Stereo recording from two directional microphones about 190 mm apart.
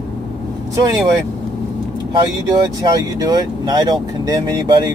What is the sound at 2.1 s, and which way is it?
Speech, 25° right (ahead or behind).